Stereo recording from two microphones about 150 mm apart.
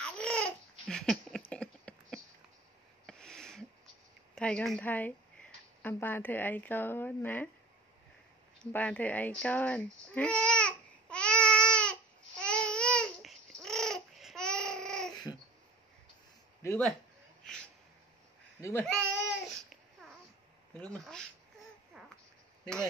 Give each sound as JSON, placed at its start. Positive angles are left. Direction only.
{"t": 0.0, "sound": "babbling", "side_deg": 5}
{"t": 1.5, "sound": "a sound", "side_deg": 5}
{"t": 4.4, "sound": "a woman's voice", "side_deg": 5}
{"t": 8.7, "sound": "speech", "side_deg": 10}
{"t": 9.4, "sound": "babbling", "side_deg": 10}
{"t": 16.6, "sound": "speech", "side_deg": 10}
{"t": 17.4, "sound": "a sound", "side_deg": 5}
{"t": 18.6, "sound": "speech", "side_deg": 20}
{"t": 19.2, "sound": "babbling", "side_deg": 0}
{"t": 20.8, "sound": "speech", "side_deg": 5}
{"t": 22.0, "sound": "babbling", "side_deg": -5}